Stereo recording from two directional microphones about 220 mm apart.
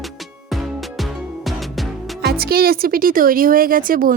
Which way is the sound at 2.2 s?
45° right (ahead or behind).